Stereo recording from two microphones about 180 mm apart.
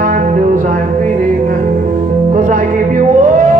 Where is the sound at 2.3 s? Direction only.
45° right (ahead or behind).